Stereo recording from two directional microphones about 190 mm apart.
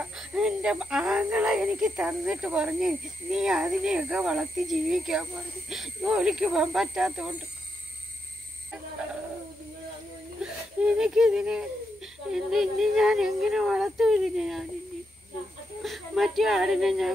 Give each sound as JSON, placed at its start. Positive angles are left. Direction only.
{"t": 0.0, "sound": "speech", "side_deg": -5}
{"t": 10.4, "sound": "wheeze", "side_deg": -5}
{"t": 11.0, "sound": "speech", "side_deg": -5}
{"t": 15.8, "sound": "speech", "side_deg": 0}